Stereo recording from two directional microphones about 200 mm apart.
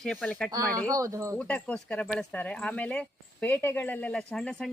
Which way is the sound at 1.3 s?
5° left (ahead or behind).